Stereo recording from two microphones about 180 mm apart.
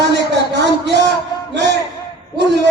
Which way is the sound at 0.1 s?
70° right (ahead or behind).